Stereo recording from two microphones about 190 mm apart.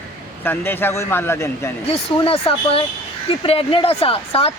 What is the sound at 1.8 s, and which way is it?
Speech, 30° left (ahead or behind).